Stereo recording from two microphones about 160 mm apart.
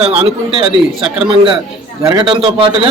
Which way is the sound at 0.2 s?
35° right (ahead or behind).